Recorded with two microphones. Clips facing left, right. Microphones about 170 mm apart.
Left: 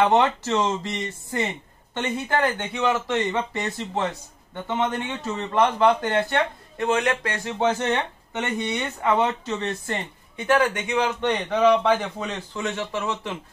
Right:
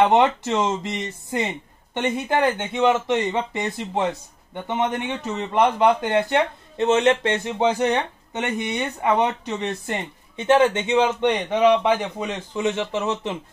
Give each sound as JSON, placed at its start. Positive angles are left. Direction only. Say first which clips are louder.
{"t": 0.0, "sound": "a man's voice", "louder": "right 2 dB", "side_deg": -15}